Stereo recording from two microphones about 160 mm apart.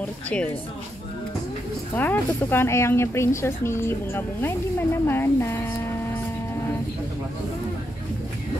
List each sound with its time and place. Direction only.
2.0 s speech: 10° left (ahead or behind)